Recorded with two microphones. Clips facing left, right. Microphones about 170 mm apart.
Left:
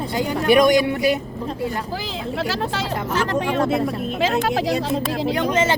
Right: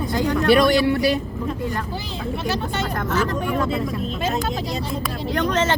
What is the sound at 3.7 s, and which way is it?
Speech, 80° left.